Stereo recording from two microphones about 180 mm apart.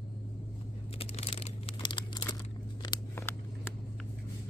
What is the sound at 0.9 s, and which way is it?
Computer keyboard, 35° left (ahead or behind).